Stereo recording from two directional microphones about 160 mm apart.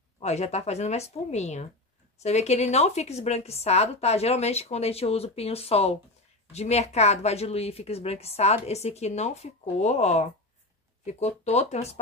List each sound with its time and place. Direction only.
0.2 s a woman's voice: 45° left (ahead or behind)